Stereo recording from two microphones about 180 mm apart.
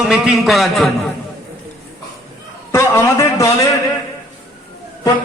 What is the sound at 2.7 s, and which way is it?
A man's voice, 15° left (ahead or behind).